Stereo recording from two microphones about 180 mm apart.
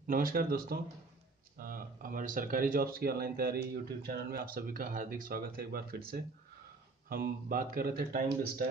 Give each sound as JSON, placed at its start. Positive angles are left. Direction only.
{"t": 0.0, "sound": "speech", "side_deg": -50}